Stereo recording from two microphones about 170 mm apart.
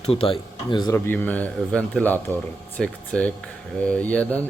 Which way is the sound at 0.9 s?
10° left (ahead or behind).